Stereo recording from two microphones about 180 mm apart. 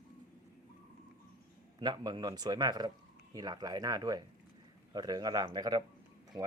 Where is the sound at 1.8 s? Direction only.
25° right (ahead or behind).